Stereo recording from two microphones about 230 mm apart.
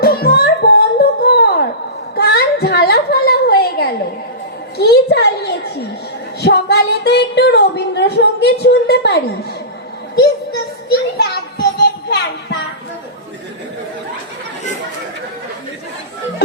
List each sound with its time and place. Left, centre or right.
0.0 s music: left
2.1 s a sound: left
10.8 s music: left